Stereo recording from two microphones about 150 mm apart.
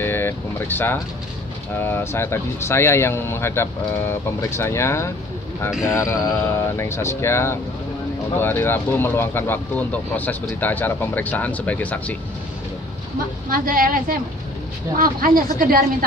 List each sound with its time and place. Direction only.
0.0 s vehicle: 15° left (ahead or behind)
1.8 s speech: 15° left (ahead or behind)
13.5 s speech: 75° right (ahead or behind)